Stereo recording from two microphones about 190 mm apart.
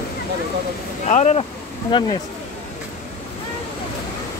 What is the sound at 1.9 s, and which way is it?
Speech, 25° left (ahead or behind).